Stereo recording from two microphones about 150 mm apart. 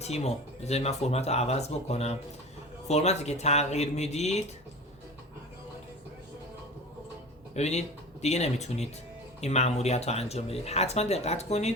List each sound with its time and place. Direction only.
0.0 s speech: 45° left (ahead or behind)
7.5 s speech: 50° left (ahead or behind)